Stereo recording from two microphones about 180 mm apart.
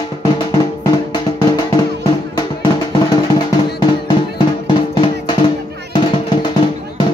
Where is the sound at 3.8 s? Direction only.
25° left (ahead or behind).